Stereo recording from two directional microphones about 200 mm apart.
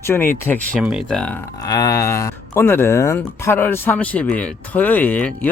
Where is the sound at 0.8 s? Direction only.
Centre (ahead or behind).